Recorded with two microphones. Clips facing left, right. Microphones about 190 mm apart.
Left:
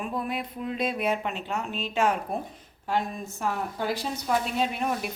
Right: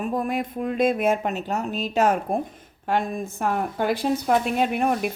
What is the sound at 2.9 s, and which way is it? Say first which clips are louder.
A woman's voice: right 4 dB; 55° right (ahead or behind).